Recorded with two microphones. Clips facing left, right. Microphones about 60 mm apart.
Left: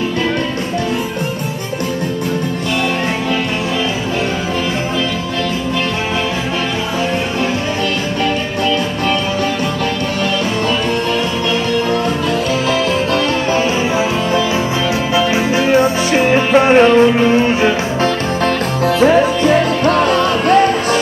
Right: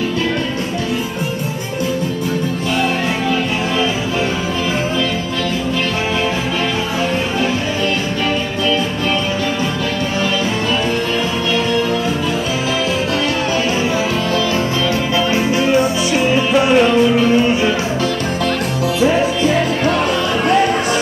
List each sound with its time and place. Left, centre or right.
15.1 s music: left
18.9 s music: left